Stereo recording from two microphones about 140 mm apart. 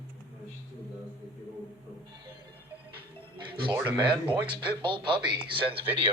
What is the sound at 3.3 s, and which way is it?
Speech, 35° right (ahead or behind).